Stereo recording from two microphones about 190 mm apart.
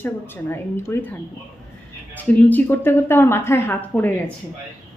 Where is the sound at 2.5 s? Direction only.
10° left (ahead or behind).